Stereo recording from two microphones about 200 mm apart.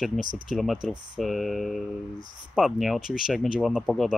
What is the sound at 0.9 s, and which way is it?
Speech, 20° right (ahead or behind).